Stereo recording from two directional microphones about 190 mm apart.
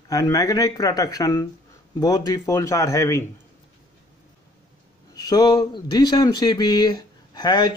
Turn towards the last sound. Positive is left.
turn(degrees=25)  # may be behind; listen again after turning